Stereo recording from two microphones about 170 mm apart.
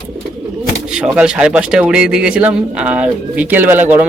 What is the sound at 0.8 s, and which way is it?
Speech, 5° right (ahead or behind).